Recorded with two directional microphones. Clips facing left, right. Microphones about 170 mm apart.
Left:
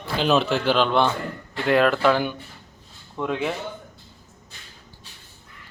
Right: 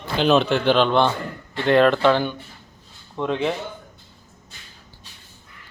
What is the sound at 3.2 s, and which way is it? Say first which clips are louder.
Speech: right 2 dB; 20° right (ahead or behind).